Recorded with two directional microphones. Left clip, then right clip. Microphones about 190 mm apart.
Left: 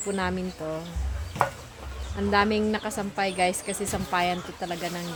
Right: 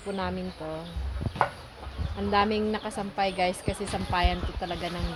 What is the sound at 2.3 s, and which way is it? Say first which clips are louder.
Speech: left 2 dB; 20° left (ahead or behind).